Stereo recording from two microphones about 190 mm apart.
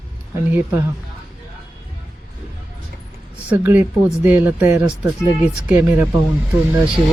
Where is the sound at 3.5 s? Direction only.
10° right (ahead or behind).